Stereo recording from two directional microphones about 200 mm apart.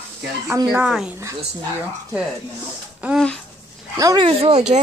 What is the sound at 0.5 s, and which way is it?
Speech, 10° right (ahead or behind).